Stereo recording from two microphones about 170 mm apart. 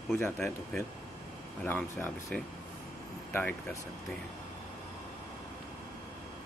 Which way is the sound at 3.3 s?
10° left (ahead or behind).